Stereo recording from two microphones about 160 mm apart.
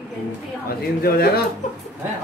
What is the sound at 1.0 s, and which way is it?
Speech, 70° left (ahead or behind).